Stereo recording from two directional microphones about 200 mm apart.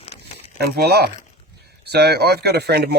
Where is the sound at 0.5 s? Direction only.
50° right (ahead or behind).